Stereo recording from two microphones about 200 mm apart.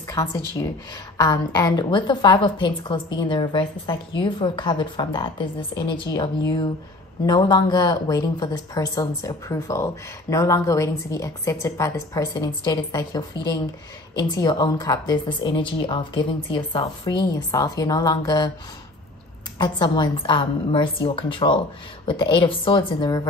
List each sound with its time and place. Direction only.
0.1 s a woman's voice: 20° left (ahead or behind)
7.2 s a woman's voice: 20° left (ahead or behind)
19.6 s a woman's voice: 20° left (ahead or behind)